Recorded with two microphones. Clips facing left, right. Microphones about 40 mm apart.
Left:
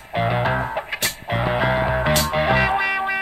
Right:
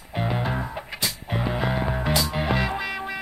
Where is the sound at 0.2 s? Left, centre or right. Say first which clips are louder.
Left 6 dB; left.